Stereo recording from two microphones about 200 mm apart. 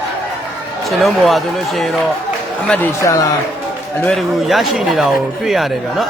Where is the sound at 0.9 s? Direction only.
Centre (ahead or behind); by 3.3 s 15° left (ahead or behind).